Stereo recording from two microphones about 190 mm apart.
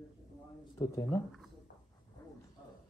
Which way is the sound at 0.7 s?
15° left (ahead or behind).